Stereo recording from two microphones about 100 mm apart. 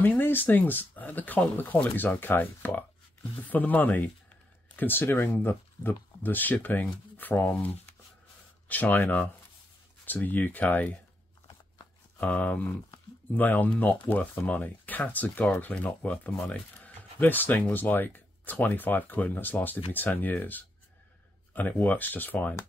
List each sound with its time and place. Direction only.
0.0 s speech: 20° left (ahead or behind)
12.2 s speech: 15° left (ahead or behind)